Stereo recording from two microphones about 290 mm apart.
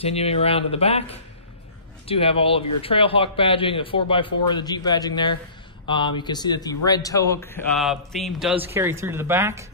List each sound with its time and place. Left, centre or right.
0.0 s a man's voice: left; by 9.7 s centre